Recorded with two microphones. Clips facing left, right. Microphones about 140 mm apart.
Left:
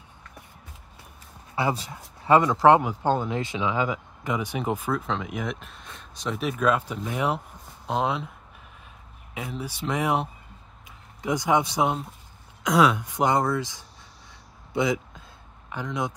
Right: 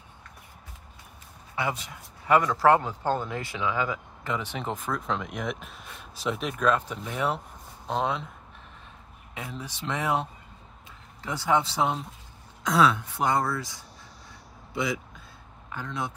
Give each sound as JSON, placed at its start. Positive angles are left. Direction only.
{"t": 1.5, "sound": "speech", "side_deg": 35}
{"t": 9.3, "sound": "speech", "side_deg": 5}
{"t": 11.2, "sound": "speech", "side_deg": 15}
{"t": 14.7, "sound": "a sound", "side_deg": 20}
{"t": 15.7, "sound": "speech", "side_deg": 15}